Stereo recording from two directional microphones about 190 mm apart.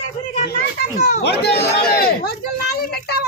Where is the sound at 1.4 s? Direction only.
60° left (ahead or behind).